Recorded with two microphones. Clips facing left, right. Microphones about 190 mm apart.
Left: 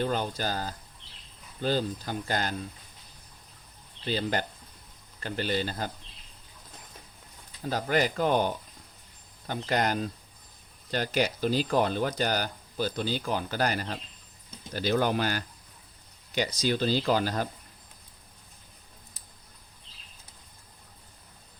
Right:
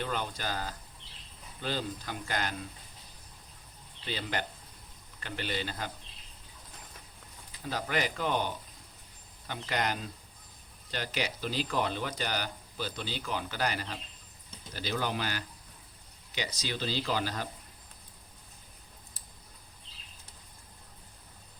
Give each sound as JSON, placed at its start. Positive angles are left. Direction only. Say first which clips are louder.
{"t": 0.0, "sound": "speech", "louder": "left 6 dB", "side_deg": 35}
{"t": 4.0, "sound": "speech", "louder": "left 6 dB", "side_deg": 40}
{"t": 7.6, "sound": "speech", "louder": "left 6 dB", "side_deg": 40}
{"t": 9.6, "sound": "speech", "louder": "left 5 dB", "side_deg": 40}